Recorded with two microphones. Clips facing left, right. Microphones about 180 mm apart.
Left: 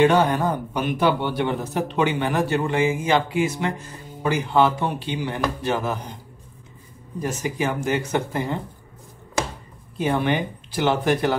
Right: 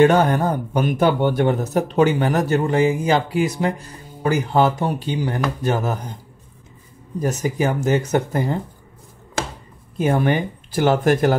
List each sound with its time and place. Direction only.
0.0 s speech: 45° right (ahead or behind)
7.2 s speech: 40° right (ahead or behind)
9.9 s speech: 45° right (ahead or behind)